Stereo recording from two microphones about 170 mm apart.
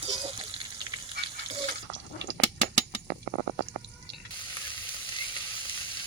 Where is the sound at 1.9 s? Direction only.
90° right.